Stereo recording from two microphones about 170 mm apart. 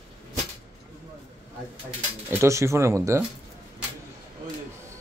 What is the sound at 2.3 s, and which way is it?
Speech, 15° right (ahead or behind).